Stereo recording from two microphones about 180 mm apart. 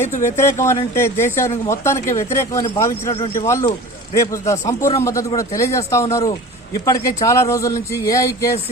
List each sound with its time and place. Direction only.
0.0 s speech: 15° left (ahead or behind)